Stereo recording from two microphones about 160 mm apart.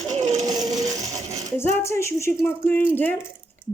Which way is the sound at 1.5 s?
15° left (ahead or behind).